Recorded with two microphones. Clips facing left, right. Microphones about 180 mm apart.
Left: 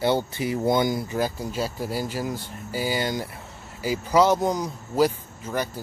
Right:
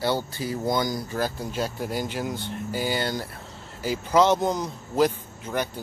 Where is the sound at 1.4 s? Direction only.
5° left (ahead or behind).